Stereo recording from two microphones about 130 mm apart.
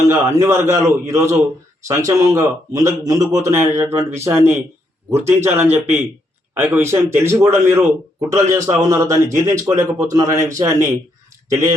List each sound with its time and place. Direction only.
0.0 s a man's voice: 20° right (ahead or behind)